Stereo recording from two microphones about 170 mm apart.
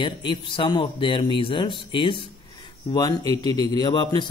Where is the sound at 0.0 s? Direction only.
30° left (ahead or behind).